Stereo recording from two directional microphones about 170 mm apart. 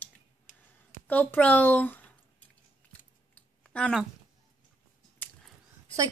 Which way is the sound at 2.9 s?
5° left (ahead or behind).